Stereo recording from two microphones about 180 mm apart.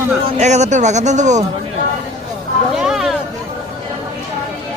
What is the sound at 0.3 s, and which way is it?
Speech, 40° right (ahead or behind).